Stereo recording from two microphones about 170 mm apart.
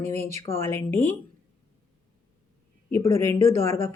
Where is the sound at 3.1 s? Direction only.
15° left (ahead or behind).